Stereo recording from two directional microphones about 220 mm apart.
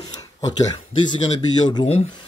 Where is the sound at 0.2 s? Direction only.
15° left (ahead or behind).